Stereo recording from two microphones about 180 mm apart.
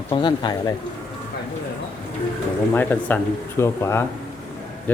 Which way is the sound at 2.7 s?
10° left (ahead or behind).